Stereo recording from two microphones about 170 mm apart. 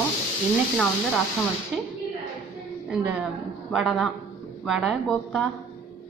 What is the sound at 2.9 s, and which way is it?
A woman's voice, 5° right (ahead or behind).